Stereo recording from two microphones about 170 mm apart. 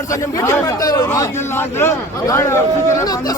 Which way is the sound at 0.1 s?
20° left (ahead or behind).